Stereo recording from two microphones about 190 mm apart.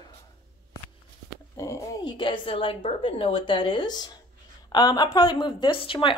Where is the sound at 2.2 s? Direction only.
25° left (ahead or behind).